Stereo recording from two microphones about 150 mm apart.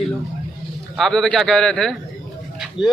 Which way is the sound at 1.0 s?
5° left (ahead or behind).